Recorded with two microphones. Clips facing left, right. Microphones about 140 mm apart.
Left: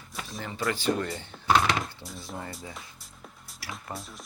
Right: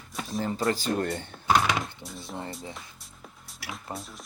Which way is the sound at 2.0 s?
Centre (ahead or behind).